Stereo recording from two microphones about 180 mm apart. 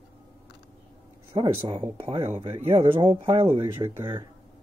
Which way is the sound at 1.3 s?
25° right (ahead or behind).